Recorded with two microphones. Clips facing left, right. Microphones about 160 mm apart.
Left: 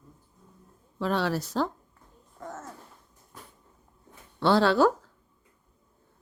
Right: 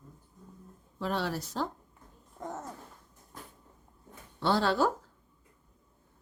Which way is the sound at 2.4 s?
15° right (ahead or behind).